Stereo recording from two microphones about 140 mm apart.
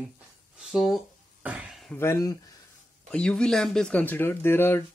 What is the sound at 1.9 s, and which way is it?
Speech, 20° left (ahead or behind).